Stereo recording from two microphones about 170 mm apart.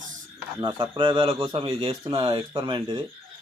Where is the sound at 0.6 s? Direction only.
30° right (ahead or behind).